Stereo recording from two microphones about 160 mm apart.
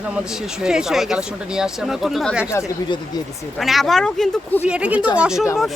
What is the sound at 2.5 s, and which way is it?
Speech, 15° left (ahead or behind).